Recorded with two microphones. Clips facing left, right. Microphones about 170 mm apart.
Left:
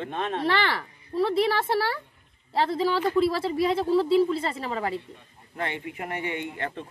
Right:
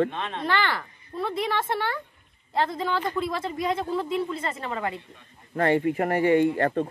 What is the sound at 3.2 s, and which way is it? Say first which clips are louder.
A woman's voice: left 5 dB; 30° left (ahead or behind).